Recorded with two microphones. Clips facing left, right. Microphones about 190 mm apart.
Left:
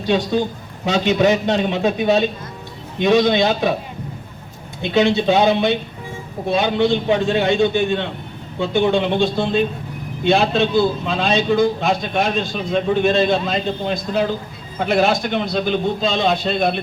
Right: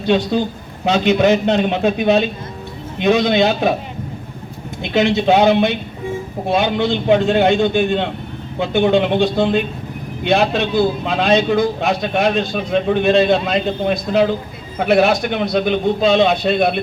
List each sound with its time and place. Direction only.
0.9 s speech: 55° right (ahead or behind)
4.9 s speech: 55° right (ahead or behind)